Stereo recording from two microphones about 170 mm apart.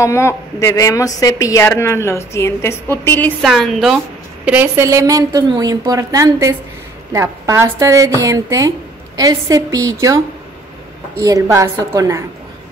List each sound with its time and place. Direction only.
0.0 s a woman's voice: 15° left (ahead or behind)
3.4 s a woman's voice: centre (ahead or behind)
4.5 s a woman's voice: 15° right (ahead or behind)
11.2 s a woman's voice: 20° right (ahead or behind)